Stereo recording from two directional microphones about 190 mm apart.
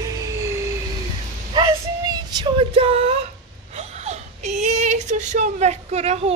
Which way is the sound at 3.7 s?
35° right (ahead or behind).